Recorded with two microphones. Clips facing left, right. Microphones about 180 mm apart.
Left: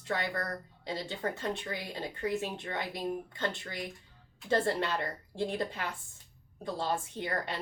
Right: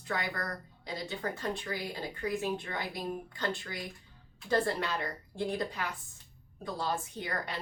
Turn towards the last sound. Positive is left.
turn(degrees=25)  # may be behind; listen again after turning